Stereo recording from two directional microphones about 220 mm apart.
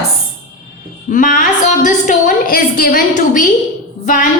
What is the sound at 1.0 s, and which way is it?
A woman's voice, 40° left (ahead or behind).